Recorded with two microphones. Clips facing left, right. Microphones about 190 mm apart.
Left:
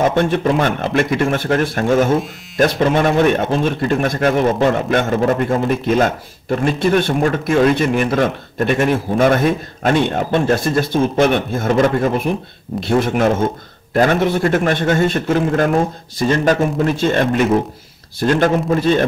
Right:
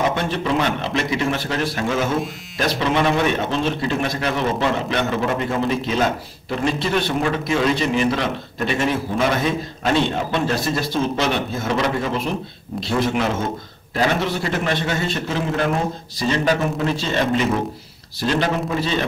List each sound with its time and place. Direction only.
0.1 s a man's voice: 50° left (ahead or behind)